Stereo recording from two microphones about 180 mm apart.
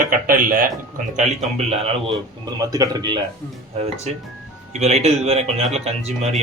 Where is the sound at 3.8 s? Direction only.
35° right (ahead or behind).